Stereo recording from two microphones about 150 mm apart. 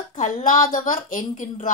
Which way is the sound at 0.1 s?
55° left (ahead or behind).